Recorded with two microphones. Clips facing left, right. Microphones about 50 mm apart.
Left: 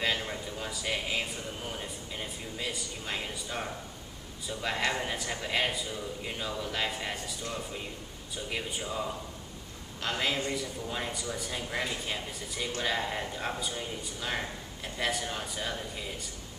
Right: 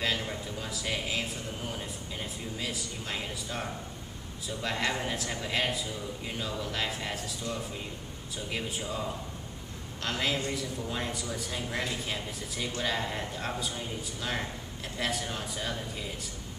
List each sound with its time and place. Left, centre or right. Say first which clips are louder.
0.0 s a man's voice: even; centre
8.5 s a man's voice: right 1 dB; centre